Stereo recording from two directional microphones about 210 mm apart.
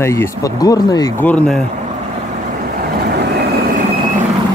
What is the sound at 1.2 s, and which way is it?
Speech, 5° left (ahead or behind).